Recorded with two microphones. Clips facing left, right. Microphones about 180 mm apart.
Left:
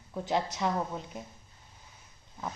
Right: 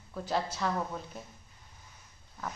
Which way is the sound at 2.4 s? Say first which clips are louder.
Left 1 dB; 20° left (ahead or behind).